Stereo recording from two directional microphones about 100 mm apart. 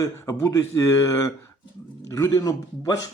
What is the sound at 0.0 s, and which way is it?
Speech, 30° left (ahead or behind).